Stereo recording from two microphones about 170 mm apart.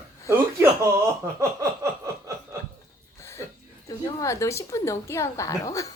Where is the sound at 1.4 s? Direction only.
20° right (ahead or behind).